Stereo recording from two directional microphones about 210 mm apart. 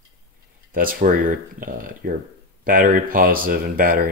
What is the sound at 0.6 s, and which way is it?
Speech, 40° right (ahead or behind).